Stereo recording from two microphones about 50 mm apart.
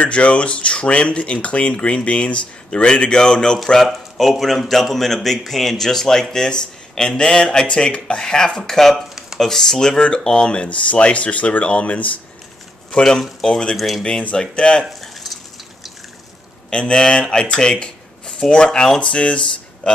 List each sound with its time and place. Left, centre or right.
0.0 s a man's voice: left
8.9 s a sound: centre
9.4 s speech: centre
13.7 s a man's voice: centre
14.2 s speech: centre
14.9 s a sound: centre
16.7 s speech: centre